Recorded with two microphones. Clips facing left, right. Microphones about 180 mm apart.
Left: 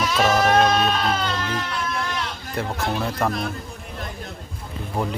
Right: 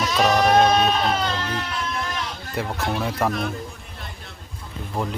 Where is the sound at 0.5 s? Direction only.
15° right (ahead or behind).